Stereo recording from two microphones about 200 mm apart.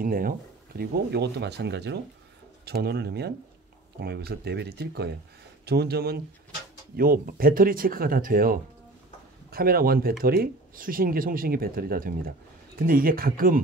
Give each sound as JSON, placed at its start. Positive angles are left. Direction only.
{"t": 0.0, "sound": "speech", "side_deg": -45}